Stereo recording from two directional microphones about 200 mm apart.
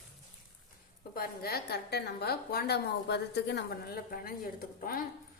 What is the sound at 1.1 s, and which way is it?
A woman's voice, 50° left (ahead or behind).